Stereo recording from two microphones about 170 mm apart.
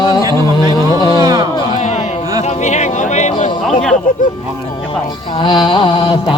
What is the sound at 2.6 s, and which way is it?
Yodeling, 45° left (ahead or behind).